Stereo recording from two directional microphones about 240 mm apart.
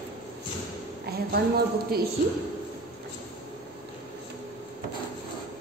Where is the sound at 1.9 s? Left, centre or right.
Right.